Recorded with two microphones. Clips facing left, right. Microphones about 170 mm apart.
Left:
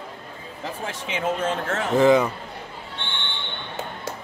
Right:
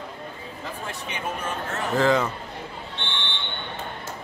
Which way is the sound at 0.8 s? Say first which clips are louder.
Left 6 dB; 90° left.